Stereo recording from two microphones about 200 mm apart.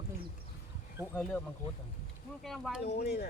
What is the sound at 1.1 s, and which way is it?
Speech, 5° left (ahead or behind).